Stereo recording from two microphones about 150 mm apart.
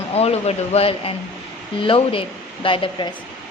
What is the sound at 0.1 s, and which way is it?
A woman's voice, 45° left (ahead or behind).